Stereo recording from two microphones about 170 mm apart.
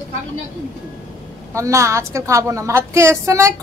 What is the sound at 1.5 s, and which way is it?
A woman's voice, 15° right (ahead or behind).